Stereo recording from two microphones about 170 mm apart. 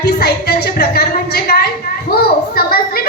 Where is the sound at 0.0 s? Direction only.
65° left (ahead or behind).